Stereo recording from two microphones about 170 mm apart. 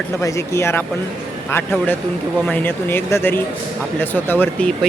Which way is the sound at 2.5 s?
10° left (ahead or behind).